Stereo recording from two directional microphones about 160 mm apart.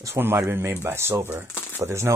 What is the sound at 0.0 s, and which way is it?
Speech, 15° right (ahead or behind).